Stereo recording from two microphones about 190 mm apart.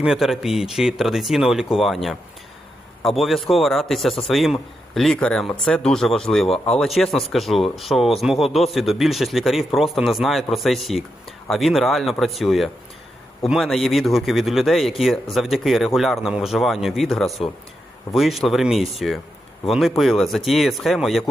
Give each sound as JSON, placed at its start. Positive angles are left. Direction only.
{"t": 0.0, "sound": "speech", "side_deg": -5}